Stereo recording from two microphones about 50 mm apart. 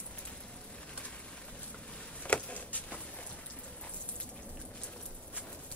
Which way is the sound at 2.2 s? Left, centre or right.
Left.